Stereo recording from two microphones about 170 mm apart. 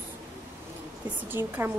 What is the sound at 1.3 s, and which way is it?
Speech, 10° right (ahead or behind).